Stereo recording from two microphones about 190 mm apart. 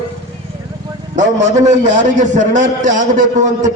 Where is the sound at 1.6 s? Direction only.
40° right (ahead or behind).